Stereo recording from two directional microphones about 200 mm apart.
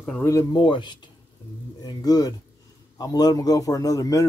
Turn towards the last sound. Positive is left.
turn(degrees=15)  # may be behind; listen again after turning